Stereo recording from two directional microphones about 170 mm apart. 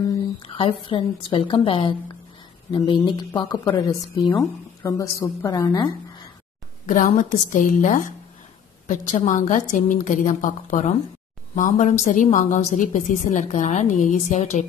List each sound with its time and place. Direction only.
0.6 s a woman's voice: 30° left (ahead or behind)
6.9 s a woman's voice: 50° left (ahead or behind)